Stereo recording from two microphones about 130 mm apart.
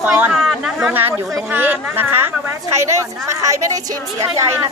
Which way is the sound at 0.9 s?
15° right (ahead or behind).